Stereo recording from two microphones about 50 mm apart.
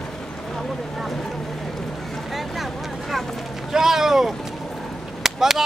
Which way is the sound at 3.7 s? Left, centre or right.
Centre.